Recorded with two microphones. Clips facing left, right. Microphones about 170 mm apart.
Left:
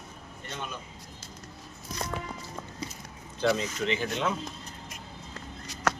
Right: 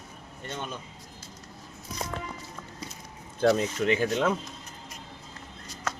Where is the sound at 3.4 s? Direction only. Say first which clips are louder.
Right 4 dB; 50° right (ahead or behind).